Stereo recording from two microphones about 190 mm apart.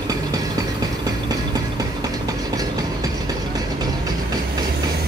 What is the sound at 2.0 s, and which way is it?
Vehicle, 20° right (ahead or behind).